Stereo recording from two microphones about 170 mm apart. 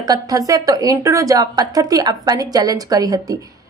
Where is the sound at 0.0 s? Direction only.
20° right (ahead or behind).